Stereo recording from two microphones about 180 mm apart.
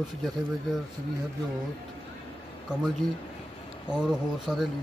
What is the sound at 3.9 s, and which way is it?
Speech, 5° right (ahead or behind).